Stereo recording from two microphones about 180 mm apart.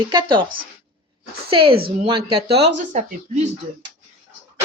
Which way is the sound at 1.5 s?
30° right (ahead or behind).